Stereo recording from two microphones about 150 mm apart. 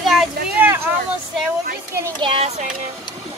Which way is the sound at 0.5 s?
15° right (ahead or behind).